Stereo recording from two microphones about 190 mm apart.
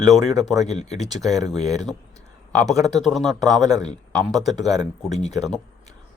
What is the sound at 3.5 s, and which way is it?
Speech, 20° right (ahead or behind).